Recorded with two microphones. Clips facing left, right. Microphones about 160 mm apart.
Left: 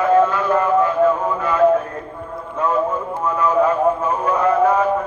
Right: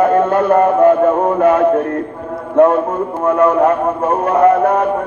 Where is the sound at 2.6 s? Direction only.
75° right (ahead or behind).